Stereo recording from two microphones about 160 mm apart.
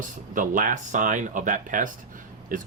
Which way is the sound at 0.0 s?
55° right (ahead or behind).